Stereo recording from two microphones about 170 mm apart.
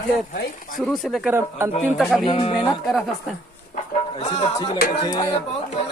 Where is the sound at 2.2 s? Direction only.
30° left (ahead or behind).